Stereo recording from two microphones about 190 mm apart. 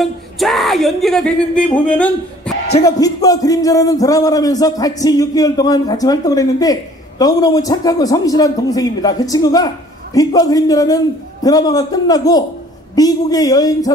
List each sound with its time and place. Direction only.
0.0 s a man's voice: centre (ahead or behind)
2.8 s speech: 20° left (ahead or behind)